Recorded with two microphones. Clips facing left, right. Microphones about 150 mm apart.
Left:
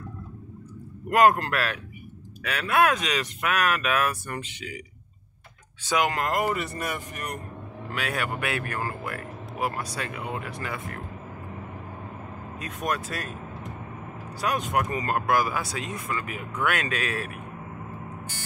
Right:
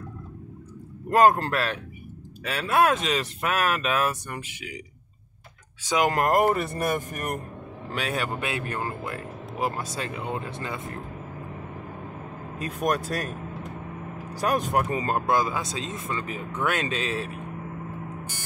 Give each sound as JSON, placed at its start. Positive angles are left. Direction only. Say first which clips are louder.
{"t": 1.1, "sound": "speech", "louder": "right 1 dB", "side_deg": -30}
{"t": 4.3, "sound": "speech", "louder": "left 2 dB", "side_deg": -10}
{"t": 6.1, "sound": "speech", "louder": "right 5 dB", "side_deg": -50}
{"t": 7.9, "sound": "speech", "louder": "right 1 dB", "side_deg": -30}
{"t": 12.6, "sound": "speech", "louder": "right 4 dB", "side_deg": -40}
{"t": 14.4, "sound": "speech", "louder": "right 2 dB", "side_deg": -35}